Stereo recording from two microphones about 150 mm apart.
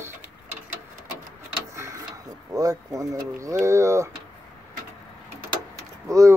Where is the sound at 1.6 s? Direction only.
20° right (ahead or behind).